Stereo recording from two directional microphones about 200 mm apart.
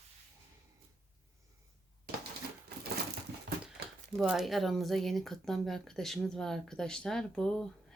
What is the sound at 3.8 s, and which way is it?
Crumpling, 55° right (ahead or behind).